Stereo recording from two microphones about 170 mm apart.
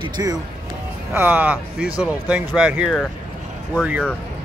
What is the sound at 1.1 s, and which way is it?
Speech, 10° right (ahead or behind).